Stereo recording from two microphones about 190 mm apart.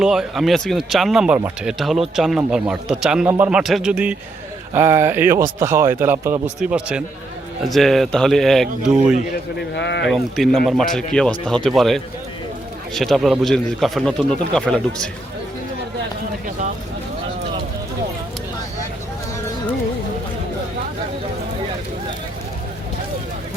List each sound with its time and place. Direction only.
0.0 s speech: 5° right (ahead or behind)
9.3 s a man's voice: 65° left (ahead or behind)
10.1 s speech: centre (ahead or behind)